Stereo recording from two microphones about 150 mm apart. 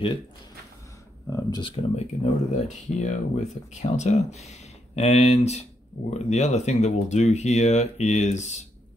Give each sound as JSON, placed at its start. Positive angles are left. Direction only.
{"t": 1.3, "sound": "speech", "side_deg": 30}
{"t": 2.5, "sound": "speech", "side_deg": 50}